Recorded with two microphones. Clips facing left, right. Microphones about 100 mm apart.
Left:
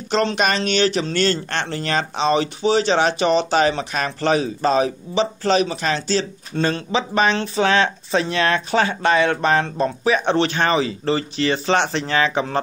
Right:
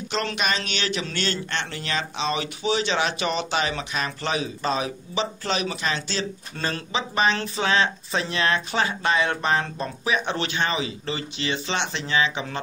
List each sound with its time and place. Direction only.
0.1 s speech: 30° left (ahead or behind)